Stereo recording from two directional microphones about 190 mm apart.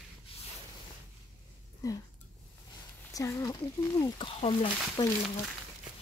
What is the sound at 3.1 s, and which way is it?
Speech, 15° left (ahead or behind).